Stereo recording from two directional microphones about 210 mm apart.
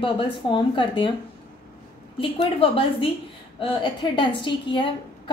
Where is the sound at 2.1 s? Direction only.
25° left (ahead or behind).